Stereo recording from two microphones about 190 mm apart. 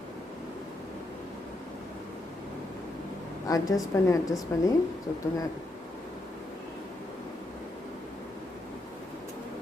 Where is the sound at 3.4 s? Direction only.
20° left (ahead or behind).